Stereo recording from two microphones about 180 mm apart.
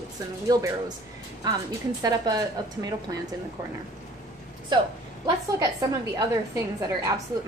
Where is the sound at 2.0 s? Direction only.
20° right (ahead or behind).